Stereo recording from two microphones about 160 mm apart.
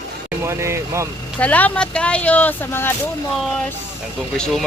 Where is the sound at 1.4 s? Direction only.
10° left (ahead or behind).